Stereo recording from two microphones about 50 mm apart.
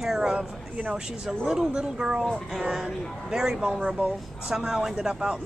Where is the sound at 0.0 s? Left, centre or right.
Centre.